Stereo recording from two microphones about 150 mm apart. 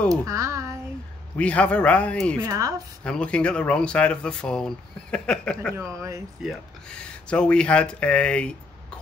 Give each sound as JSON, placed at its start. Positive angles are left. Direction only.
{"t": 0.1, "sound": "a sound", "side_deg": -20}
{"t": 1.3, "sound": "speech", "side_deg": 10}
{"t": 2.4, "sound": "speech", "side_deg": -20}
{"t": 3.0, "sound": "speech", "side_deg": 5}
{"t": 5.8, "sound": "speech", "side_deg": -20}
{"t": 6.4, "sound": "speech", "side_deg": 5}